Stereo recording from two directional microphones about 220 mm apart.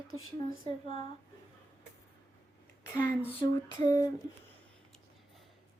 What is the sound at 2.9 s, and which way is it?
Female singing, 10° left (ahead or behind).